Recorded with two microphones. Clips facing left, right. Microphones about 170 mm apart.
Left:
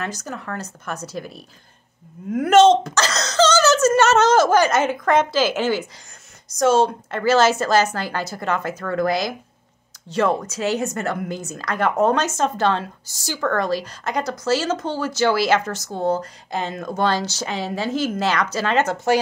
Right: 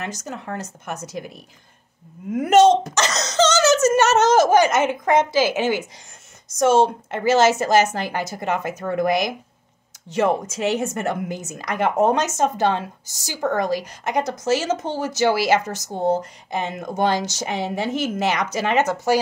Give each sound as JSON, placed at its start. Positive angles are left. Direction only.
{"t": 0.0, "sound": "a woman's voice", "side_deg": -20}
{"t": 2.3, "sound": "a sound", "side_deg": -20}
{"t": 6.6, "sound": "a woman's voice", "side_deg": -25}